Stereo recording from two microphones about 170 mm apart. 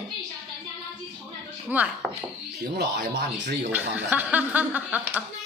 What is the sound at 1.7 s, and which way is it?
Speech, 10° right (ahead or behind).